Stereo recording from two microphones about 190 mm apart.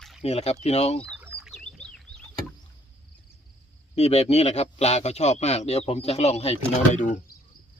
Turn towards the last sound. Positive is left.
turn(degrees=40)  # may be behind; listen again after turning